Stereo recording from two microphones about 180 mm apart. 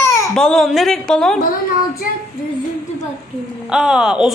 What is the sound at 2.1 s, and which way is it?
Female singing, 50° left (ahead or behind).